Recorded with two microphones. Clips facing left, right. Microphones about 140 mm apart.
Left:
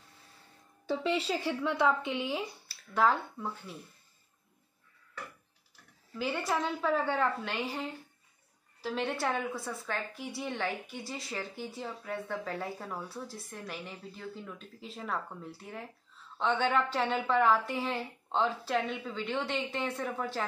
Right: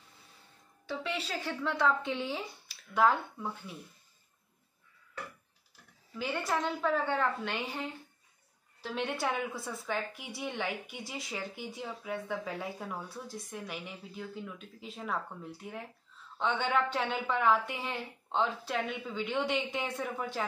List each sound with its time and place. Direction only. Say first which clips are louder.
1.0 s a woman's voice: left 6 dB; 25° left (ahead or behind); by 3.7 s 5° right (ahead or behind)
6.1 s a woman's voice: left 1 dB; 5° left (ahead or behind)